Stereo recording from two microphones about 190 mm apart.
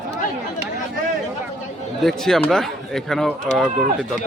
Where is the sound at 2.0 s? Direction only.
Centre (ahead or behind).